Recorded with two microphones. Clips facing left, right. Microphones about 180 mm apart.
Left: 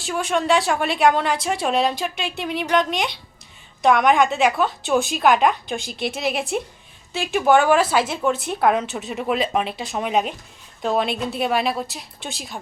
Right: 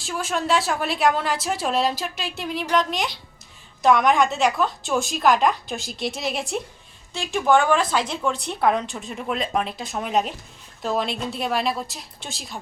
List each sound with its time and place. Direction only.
0.0 s a woman's voice: centre (ahead or behind)